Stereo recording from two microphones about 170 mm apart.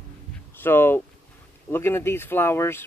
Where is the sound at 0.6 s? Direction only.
15° left (ahead or behind).